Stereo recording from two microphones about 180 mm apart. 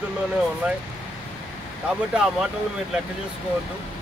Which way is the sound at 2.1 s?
5° right (ahead or behind).